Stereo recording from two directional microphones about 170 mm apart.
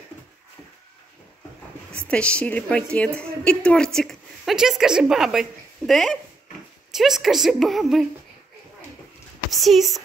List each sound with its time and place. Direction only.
2.0 s a woman's voice: 5° left (ahead or behind)
9.5 s a woman's voice: centre (ahead or behind)